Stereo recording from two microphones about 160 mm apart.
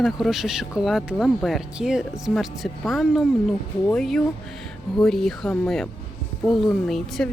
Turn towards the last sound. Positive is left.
turn(degrees=0)  # may be behind; listen again after turning